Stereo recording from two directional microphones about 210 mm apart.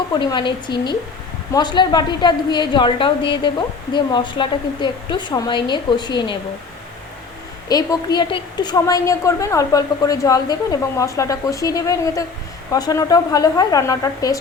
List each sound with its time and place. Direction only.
0.1 s a woman's voice: 20° left (ahead or behind)
7.7 s a woman's voice: 20° left (ahead or behind)